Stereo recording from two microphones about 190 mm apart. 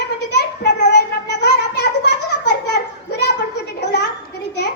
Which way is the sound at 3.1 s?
60° left (ahead or behind).